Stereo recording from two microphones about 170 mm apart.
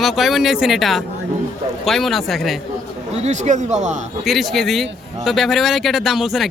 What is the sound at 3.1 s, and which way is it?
Speech, 40° right (ahead or behind).